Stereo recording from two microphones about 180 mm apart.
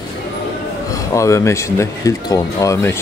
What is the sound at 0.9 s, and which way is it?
Speech, 20° left (ahead or behind).